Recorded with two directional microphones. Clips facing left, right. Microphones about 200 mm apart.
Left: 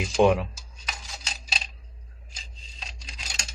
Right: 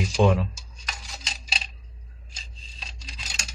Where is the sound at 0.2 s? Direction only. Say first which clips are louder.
Left 2 dB; 15° left (ahead or behind).